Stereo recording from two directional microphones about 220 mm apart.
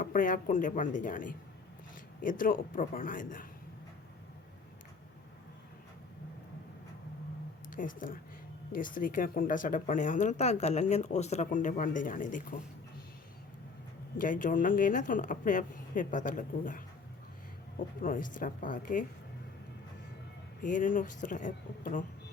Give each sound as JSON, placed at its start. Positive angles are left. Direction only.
{"t": 0.0, "sound": "speech", "side_deg": 35}
{"t": 7.7, "sound": "speech", "side_deg": 35}
{"t": 14.2, "sound": "speech", "side_deg": 35}
{"t": 18.0, "sound": "speech", "side_deg": 40}
{"t": 20.6, "sound": "speech", "side_deg": 35}